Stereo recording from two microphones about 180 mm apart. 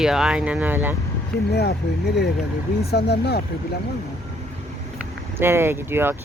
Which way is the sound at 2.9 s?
65° left (ahead or behind).